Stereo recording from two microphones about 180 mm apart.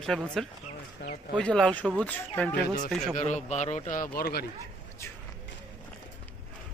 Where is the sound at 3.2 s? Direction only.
40° left (ahead or behind); by 4.4 s 60° left (ahead or behind).